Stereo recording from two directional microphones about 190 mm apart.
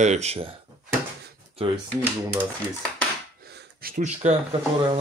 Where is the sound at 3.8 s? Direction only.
45° right (ahead or behind).